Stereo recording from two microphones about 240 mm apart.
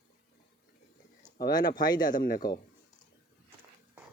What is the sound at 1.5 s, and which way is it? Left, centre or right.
Speech, centre.